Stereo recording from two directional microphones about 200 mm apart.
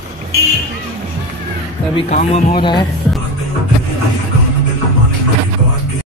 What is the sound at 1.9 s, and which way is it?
Speech, 35° left (ahead or behind).